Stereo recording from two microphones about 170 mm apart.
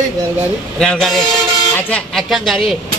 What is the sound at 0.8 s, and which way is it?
Speech, 5° left (ahead or behind).